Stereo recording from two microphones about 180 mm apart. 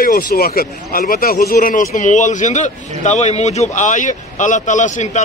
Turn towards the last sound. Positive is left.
turn(degrees=40)  # may be behind; listen again after turning